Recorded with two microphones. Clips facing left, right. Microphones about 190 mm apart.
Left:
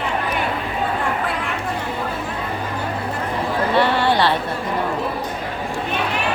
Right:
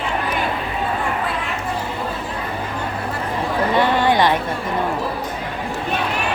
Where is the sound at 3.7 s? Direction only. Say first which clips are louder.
Right 1 dB; 15° right (ahead or behind).